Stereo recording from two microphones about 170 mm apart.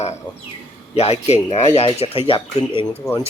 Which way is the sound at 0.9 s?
40° left (ahead or behind).